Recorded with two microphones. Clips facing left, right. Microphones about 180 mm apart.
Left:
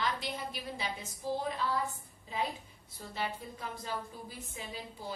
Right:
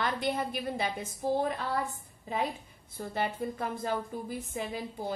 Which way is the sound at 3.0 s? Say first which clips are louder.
Right 6 dB; 55° right (ahead or behind).